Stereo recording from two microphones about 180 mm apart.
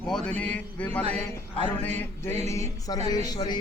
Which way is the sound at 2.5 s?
20° left (ahead or behind).